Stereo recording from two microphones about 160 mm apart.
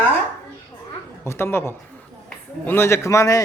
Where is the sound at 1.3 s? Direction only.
15° left (ahead or behind).